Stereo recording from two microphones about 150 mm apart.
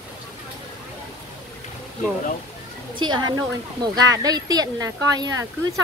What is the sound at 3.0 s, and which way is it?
A woman's voice, 30° right (ahead or behind).